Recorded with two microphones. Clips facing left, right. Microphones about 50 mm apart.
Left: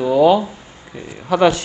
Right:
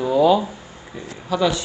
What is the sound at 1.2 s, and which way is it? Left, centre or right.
Speech, left.